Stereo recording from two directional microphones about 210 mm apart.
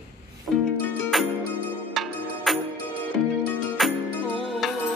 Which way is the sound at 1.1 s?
Centre (ahead or behind).